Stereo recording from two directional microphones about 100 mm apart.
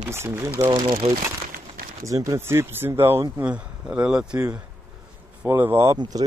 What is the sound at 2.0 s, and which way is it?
Speech, 35° right (ahead or behind).